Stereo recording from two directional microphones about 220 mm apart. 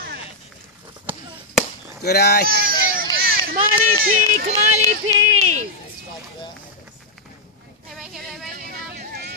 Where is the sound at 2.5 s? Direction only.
40° right (ahead or behind).